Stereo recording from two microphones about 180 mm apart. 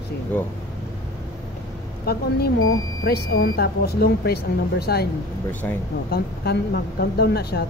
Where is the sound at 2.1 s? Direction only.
60° left (ahead or behind).